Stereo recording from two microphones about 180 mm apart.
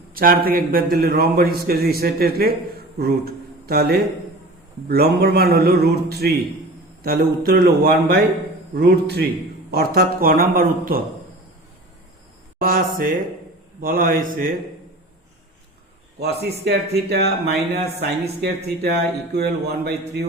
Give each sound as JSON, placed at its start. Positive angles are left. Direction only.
{"t": 0.1, "sound": "a man's voice", "side_deg": -55}
{"t": 12.5, "sound": "a man's voice", "side_deg": -55}
{"t": 16.2, "sound": "a man's voice", "side_deg": -65}